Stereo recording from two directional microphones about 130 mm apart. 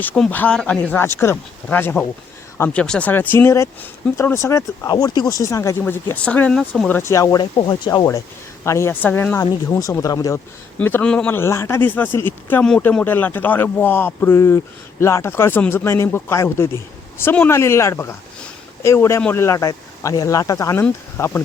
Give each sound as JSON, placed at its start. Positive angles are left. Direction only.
{"t": 0.0, "sound": "speech", "side_deg": 15}
{"t": 6.9, "sound": "speech", "side_deg": 20}
{"t": 8.6, "sound": "speech", "side_deg": 20}
{"t": 10.8, "sound": "speech", "side_deg": 10}